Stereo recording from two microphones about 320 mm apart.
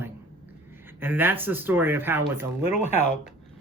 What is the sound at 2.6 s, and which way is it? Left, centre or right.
Speech, left.